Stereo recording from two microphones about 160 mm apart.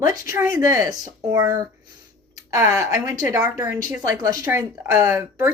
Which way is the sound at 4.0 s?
20° right (ahead or behind).